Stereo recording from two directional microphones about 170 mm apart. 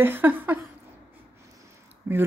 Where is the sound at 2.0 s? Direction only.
10° right (ahead or behind).